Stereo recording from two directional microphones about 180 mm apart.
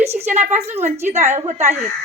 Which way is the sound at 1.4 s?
35° right (ahead or behind).